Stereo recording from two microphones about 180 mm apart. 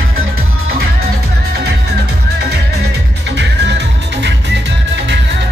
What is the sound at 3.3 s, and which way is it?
Music, 70° right (ahead or behind).